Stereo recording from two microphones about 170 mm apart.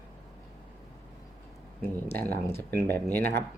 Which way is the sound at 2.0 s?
10° left (ahead or behind).